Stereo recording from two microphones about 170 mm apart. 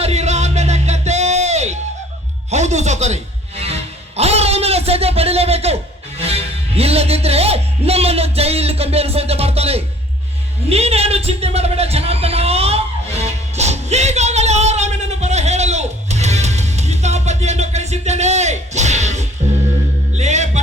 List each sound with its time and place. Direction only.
0.0 s music: 40° right (ahead or behind)
4.2 s a sound: 40° right (ahead or behind)
13.1 s music: 40° right (ahead or behind)